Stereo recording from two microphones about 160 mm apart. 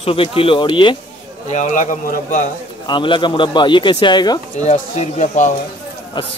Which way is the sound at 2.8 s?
30° left (ahead or behind).